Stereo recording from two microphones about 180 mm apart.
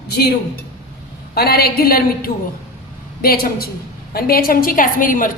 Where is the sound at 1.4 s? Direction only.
60° left (ahead or behind).